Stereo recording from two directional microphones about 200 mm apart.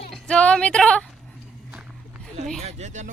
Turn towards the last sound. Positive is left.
turn(degrees=-35)  # may be behind; listen again after turning